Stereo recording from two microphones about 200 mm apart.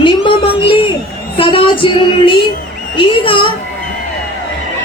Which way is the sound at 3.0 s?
25° left (ahead or behind).